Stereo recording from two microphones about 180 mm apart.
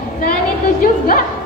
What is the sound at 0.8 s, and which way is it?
Speech, 50° left (ahead or behind).